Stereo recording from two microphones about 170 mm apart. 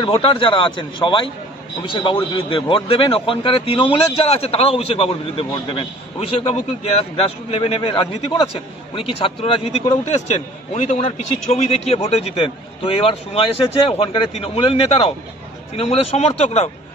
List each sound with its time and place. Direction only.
0.0 s a man's voice: 30° left (ahead or behind)